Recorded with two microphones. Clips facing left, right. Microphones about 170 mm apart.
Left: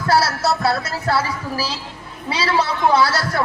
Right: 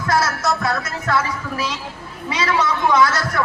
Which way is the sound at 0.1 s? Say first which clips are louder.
Left 2 dB; 30° left (ahead or behind).